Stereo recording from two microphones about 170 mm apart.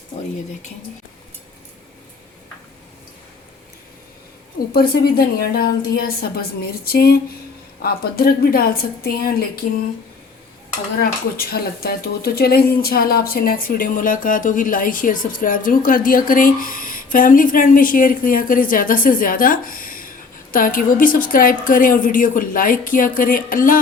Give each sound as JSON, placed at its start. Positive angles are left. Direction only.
{"t": 4.7, "sound": "speech", "side_deg": 65}
{"t": 11.0, "sound": "speech", "side_deg": 60}